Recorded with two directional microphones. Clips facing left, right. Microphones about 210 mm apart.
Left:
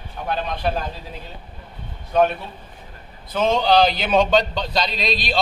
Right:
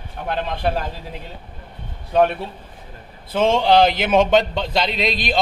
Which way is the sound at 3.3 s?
25° right (ahead or behind).